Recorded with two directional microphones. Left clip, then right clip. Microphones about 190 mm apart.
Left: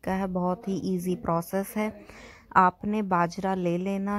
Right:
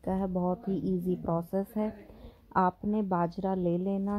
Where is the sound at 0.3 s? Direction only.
30° left (ahead or behind).